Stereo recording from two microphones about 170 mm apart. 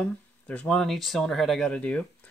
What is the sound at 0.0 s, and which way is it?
Speech, 10° left (ahead or behind).